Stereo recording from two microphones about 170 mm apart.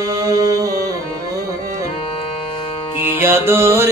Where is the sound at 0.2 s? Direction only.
20° right (ahead or behind).